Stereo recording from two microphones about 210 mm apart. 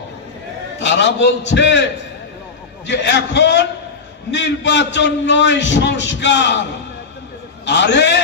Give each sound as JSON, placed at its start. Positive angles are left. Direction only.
{"t": 0.7, "sound": "a man's voice", "side_deg": 60}
{"t": 2.9, "sound": "a man's voice", "side_deg": 60}
{"t": 7.6, "sound": "a man's voice", "side_deg": 55}